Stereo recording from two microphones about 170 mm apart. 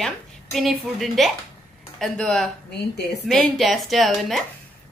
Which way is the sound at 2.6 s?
75° left (ahead or behind).